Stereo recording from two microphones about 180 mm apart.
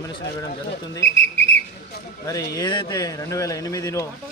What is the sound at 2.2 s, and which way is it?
Speech, 20° left (ahead or behind).